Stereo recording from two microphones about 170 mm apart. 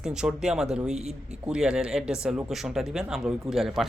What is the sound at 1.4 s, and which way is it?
Speech, 5° right (ahead or behind).